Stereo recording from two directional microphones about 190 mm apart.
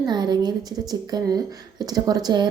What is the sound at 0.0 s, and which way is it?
A woman's voice, 20° right (ahead or behind).